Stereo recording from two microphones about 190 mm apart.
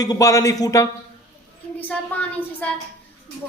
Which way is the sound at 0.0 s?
20° left (ahead or behind).